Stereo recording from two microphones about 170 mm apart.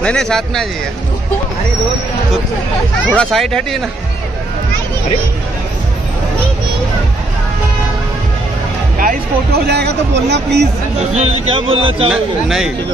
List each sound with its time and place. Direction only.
0.0 s speech: 5° left (ahead or behind)
3.2 s speech: centre (ahead or behind)
9.0 s speech: 70° right (ahead or behind)
11.1 s speech: 40° right (ahead or behind)
12.1 s speech: 5° right (ahead or behind)